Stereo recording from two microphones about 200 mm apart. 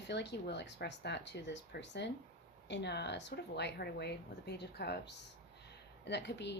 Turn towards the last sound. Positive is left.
turn(degrees=60)  # may be behind; listen again after turning